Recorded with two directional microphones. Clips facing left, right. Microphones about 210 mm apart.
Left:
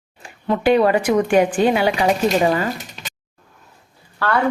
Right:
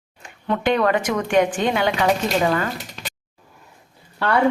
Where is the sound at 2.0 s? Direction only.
20° left (ahead or behind).